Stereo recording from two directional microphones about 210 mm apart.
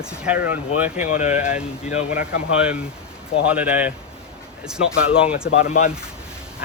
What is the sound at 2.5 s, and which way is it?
Speech, 5° right (ahead or behind).